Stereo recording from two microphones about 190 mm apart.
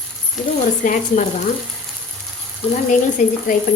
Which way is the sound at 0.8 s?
45° left (ahead or behind).